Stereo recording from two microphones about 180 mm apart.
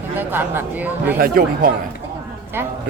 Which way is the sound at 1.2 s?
55° right (ahead or behind).